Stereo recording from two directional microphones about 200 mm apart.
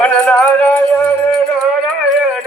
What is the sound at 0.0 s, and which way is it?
Music, 5° left (ahead or behind).